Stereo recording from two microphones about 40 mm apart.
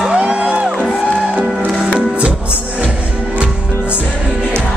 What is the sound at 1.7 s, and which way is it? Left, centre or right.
Music, centre.